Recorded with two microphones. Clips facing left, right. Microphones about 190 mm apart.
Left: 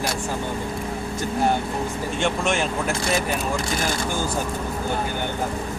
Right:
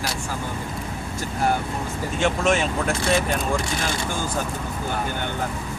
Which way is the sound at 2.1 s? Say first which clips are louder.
Right 3 dB; centre (ahead or behind).